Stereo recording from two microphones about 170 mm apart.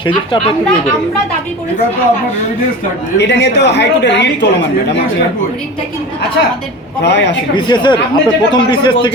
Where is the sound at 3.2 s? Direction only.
90° left.